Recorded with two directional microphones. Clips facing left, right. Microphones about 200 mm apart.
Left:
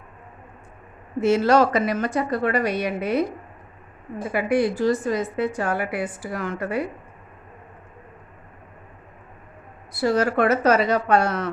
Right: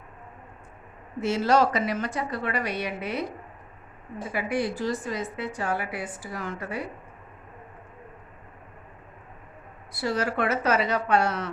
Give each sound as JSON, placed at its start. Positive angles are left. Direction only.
{"t": 1.2, "sound": "a woman's voice", "side_deg": 55}
{"t": 4.2, "sound": "a woman's voice", "side_deg": 55}
{"t": 9.9, "sound": "a woman's voice", "side_deg": 45}